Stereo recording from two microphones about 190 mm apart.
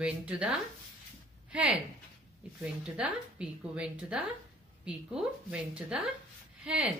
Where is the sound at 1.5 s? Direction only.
5° right (ahead or behind).